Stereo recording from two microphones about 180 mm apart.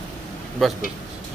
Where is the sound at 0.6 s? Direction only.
Centre (ahead or behind).